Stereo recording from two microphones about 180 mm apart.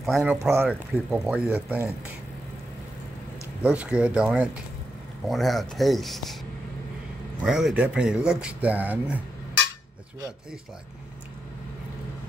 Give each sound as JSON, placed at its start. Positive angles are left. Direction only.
{"t": 0.0, "sound": "speech", "side_deg": 0}
{"t": 0.4, "sound": "speech", "side_deg": -10}
{"t": 0.9, "sound": "speech", "side_deg": 0}
{"t": 3.6, "sound": "speech", "side_deg": -5}
{"t": 7.4, "sound": "speech", "side_deg": -5}